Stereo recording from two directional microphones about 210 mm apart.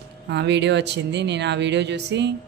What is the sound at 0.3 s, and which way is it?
Speech, 55° right (ahead or behind).